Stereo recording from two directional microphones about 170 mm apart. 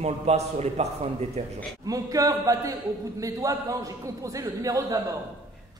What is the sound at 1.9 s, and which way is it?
A man's voice, 20° right (ahead or behind).